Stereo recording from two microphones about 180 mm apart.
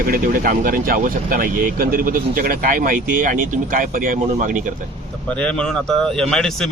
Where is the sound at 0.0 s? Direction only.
55° right (ahead or behind).